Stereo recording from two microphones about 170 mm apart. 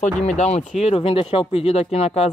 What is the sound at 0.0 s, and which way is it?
Speech, 45° left (ahead or behind).